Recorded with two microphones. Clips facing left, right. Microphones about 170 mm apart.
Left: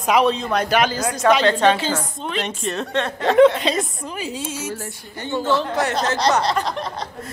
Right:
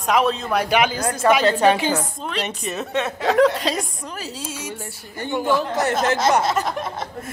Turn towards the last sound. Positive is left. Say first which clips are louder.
# even
turn(degrees=-5)  # may be behind; listen again after turning